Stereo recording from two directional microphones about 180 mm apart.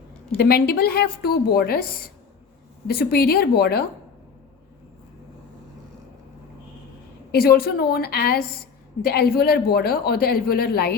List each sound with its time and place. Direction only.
0.3 s a man's voice: 60° left (ahead or behind)
2.8 s a man's voice: 60° left (ahead or behind)
7.3 s a man's voice: 60° left (ahead or behind)